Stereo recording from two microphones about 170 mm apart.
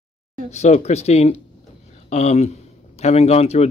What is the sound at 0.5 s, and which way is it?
Speech, 40° left (ahead or behind).